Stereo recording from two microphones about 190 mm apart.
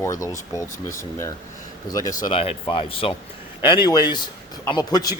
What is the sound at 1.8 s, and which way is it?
Speech, 20° left (ahead or behind).